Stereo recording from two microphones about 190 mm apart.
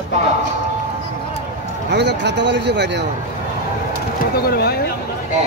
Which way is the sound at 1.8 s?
65° right (ahead or behind).